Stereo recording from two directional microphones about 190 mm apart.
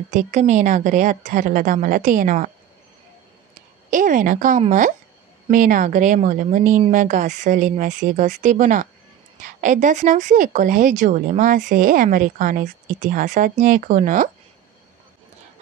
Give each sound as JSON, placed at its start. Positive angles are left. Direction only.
{"t": 0.1, "sound": "speech", "side_deg": -40}
{"t": 3.9, "sound": "speech", "side_deg": -45}